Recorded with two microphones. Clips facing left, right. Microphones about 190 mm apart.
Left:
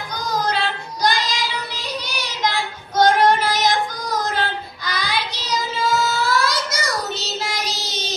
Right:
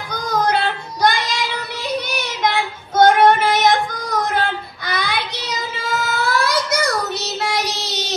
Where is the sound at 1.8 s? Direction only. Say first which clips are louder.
Right 5 dB; 60° right (ahead or behind).